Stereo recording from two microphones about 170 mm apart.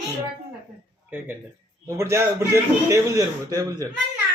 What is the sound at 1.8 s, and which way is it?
A man's voice, 15° right (ahead or behind).